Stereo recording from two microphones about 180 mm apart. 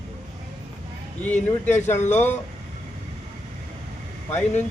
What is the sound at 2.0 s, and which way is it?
Speech, 40° left (ahead or behind).